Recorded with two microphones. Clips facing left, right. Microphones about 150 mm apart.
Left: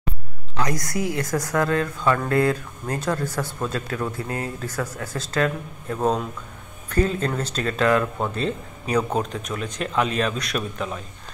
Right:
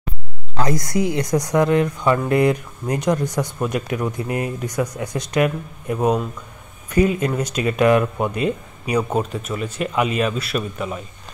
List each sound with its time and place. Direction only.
0.6 s a woman's voice: 25° right (ahead or behind); by 11.0 s 5° right (ahead or behind)